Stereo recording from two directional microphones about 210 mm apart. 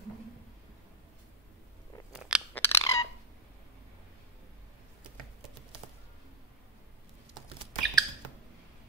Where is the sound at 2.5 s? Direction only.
10° left (ahead or behind).